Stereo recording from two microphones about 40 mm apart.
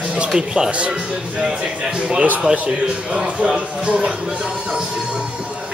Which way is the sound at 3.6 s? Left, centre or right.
Right.